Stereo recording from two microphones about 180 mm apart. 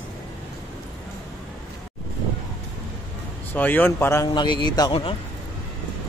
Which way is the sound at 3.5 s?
10° left (ahead or behind).